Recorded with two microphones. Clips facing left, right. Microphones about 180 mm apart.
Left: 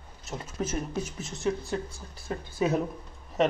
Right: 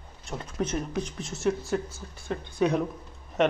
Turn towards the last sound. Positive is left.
turn(degrees=0)  # may be behind; listen again after turning